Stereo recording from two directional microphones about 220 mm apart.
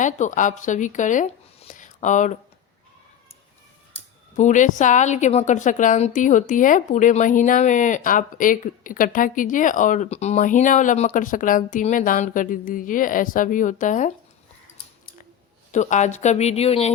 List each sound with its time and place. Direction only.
0.0 s speech: 35° left (ahead or behind)
4.4 s a woman's voice: 35° left (ahead or behind)
15.7 s a woman's voice: 35° left (ahead or behind)